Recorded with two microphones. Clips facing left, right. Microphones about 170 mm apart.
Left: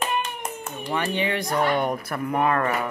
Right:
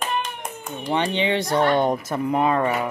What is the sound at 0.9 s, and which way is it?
Speech, 25° right (ahead or behind).